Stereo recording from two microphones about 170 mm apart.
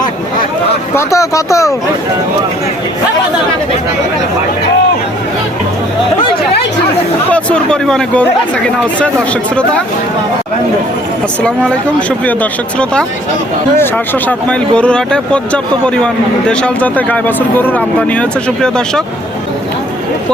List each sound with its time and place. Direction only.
0.9 s speech: 20° left (ahead or behind)
7.3 s speech: 5° left (ahead or behind)
11.4 s speech: 5° left (ahead or behind)